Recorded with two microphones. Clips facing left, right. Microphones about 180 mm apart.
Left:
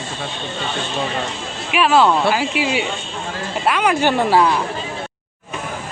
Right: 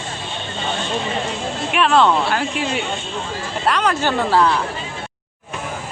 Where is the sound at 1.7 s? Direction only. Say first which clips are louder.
Left 1 dB; 5° left (ahead or behind).